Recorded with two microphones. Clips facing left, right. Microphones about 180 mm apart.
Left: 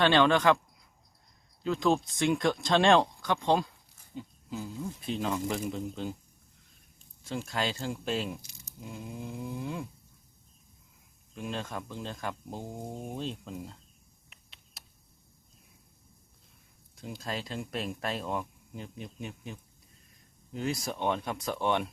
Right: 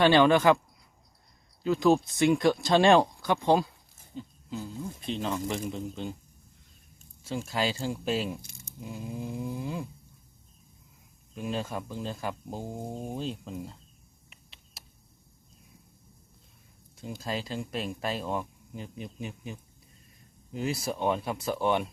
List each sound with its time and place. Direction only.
0.0 s speech: 10° right (ahead or behind)
1.6 s speech: 5° right (ahead or behind)
4.1 s speech: 10° left (ahead or behind)
7.3 s speech: 5° right (ahead or behind)
8.4 s speech: 50° right (ahead or behind)
8.8 s speech: centre (ahead or behind)
11.3 s speech: 5° right (ahead or behind)
14.3 s a sound: centre (ahead or behind)
17.2 s speech: centre (ahead or behind)